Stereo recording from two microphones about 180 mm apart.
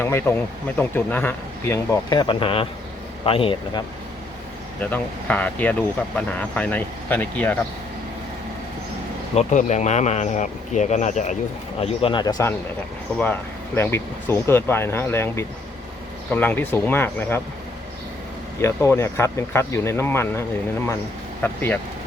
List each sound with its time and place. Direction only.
0.0 s speech: 15° left (ahead or behind); by 3.8 s 30° left (ahead or behind)
4.8 s speech: 10° left (ahead or behind)
9.3 s speech: 40° left (ahead or behind)
11.8 s speech: 30° left (ahead or behind); by 17.4 s 10° left (ahead or behind)
18.6 s speech: 15° left (ahead or behind)
21.4 s speech: 10° left (ahead or behind)